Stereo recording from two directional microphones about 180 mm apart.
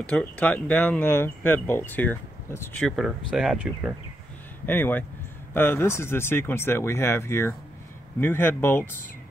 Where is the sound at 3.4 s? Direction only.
5° right (ahead or behind).